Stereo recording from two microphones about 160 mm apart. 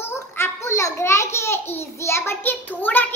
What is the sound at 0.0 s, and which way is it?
Babbling, 15° left (ahead or behind).